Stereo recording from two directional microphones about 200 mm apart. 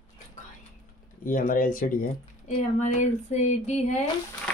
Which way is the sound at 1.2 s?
45° left (ahead or behind).